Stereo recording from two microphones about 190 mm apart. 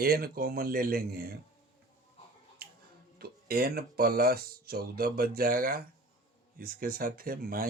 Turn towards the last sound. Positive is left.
turn(degrees=-50)  # may be behind; listen again after turning